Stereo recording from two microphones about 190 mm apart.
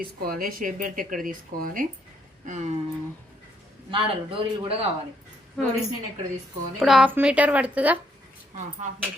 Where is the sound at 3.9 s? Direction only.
25° right (ahead or behind).